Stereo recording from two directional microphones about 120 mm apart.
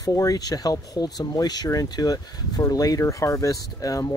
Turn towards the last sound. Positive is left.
turn(degrees=30)  # may be behind; listen again after turning